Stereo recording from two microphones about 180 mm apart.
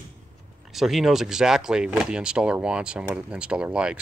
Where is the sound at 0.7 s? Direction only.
Centre (ahead or behind).